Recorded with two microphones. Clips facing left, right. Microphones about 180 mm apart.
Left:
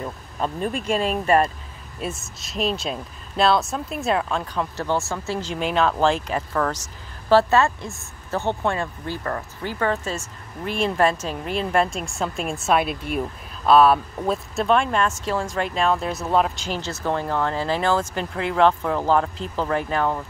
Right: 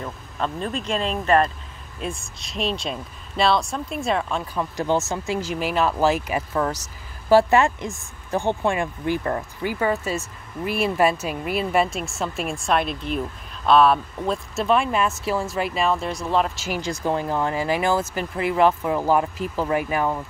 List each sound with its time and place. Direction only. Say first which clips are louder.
0.0 s speech: left 1 dB; 10° left (ahead or behind)
4.7 s speech: right 4 dB; 15° right (ahead or behind)